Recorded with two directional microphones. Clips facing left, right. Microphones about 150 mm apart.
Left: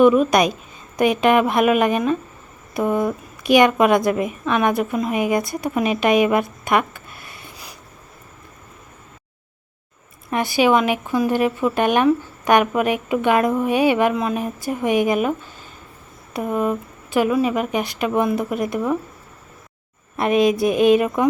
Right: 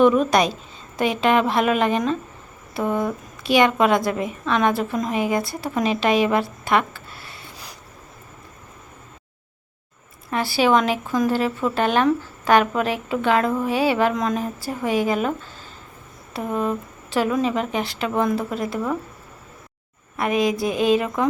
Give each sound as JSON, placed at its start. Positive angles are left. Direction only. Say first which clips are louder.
{"t": 0.0, "sound": "speech", "louder": "left 2 dB", "side_deg": 10}
{"t": 6.7, "sound": "a sound", "louder": "left 1 dB", "side_deg": 15}
{"t": 10.2, "sound": "speech", "louder": "left 2 dB", "side_deg": 20}
{"t": 20.1, "sound": "speech", "louder": "left 4 dB", "side_deg": 25}